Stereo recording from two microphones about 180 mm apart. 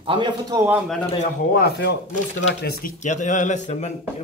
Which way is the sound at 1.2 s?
60° left (ahead or behind).